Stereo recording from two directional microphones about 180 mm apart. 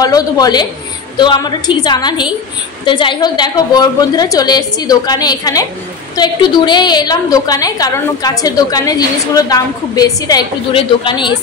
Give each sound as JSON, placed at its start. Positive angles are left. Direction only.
{"t": 0.0, "sound": "a woman's voice", "side_deg": 20}